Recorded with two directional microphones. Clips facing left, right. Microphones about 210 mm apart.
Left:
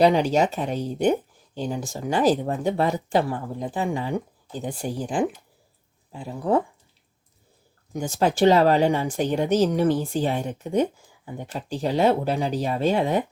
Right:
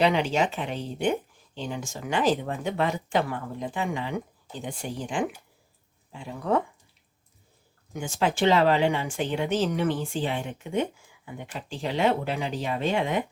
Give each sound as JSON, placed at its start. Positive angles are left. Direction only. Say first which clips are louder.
{"t": 0.0, "sound": "speech", "louder": "left 5 dB", "side_deg": 40}
{"t": 7.9, "sound": "speech", "louder": "left 4 dB", "side_deg": 40}